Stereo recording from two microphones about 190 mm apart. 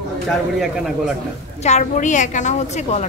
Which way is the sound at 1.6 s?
40° left (ahead or behind).